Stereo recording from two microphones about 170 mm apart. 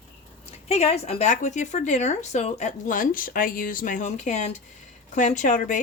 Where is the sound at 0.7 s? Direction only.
40° left (ahead or behind).